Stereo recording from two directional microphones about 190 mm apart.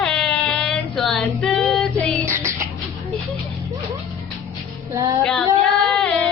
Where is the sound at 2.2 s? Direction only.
15° right (ahead or behind).